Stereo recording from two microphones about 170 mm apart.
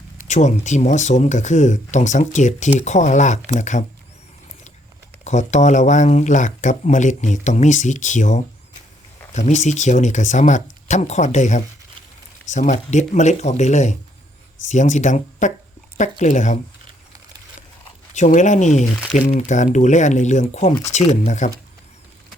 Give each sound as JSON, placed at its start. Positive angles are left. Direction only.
{"t": 0.2, "sound": "speech", "side_deg": 45}
{"t": 5.2, "sound": "speech", "side_deg": 45}
{"t": 18.1, "sound": "speech", "side_deg": 45}